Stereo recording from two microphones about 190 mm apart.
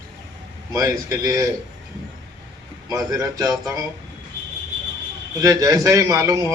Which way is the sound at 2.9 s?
20° right (ahead or behind).